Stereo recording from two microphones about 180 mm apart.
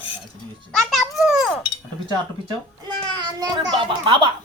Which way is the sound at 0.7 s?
Centre (ahead or behind).